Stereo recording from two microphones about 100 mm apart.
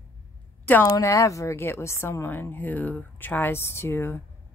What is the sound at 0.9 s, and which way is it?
A woman's voice, 35° left (ahead or behind).